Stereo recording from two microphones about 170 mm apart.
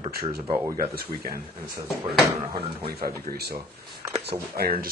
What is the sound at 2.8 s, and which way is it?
Speech, 65° right (ahead or behind).